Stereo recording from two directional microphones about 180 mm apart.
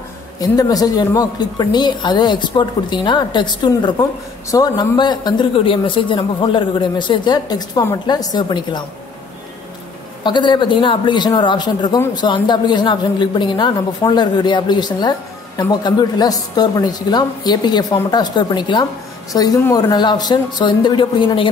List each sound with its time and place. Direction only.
0.4 s speech: 20° left (ahead or behind)
10.2 s speech: 25° left (ahead or behind)